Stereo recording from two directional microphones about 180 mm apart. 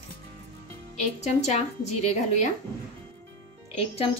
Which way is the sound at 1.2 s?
40° left (ahead or behind).